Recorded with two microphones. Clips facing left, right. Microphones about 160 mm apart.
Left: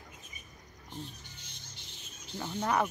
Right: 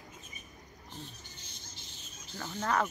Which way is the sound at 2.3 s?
15° left (ahead or behind).